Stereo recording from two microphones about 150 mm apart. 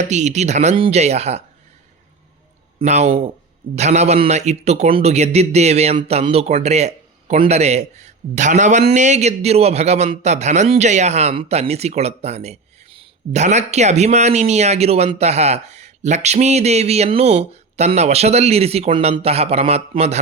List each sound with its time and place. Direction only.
0.0 s a man's voice: 50° right (ahead or behind)
2.7 s a man's voice: 45° right (ahead or behind)